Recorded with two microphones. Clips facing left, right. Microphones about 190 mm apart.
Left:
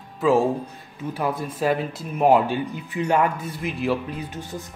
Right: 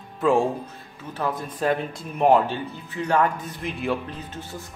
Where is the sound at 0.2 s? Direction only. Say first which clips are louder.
Left 2 dB; 5° left (ahead or behind).